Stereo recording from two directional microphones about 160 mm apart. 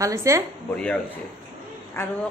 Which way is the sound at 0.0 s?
20° right (ahead or behind).